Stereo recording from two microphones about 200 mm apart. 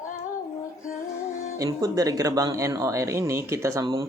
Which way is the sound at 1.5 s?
15° right (ahead or behind).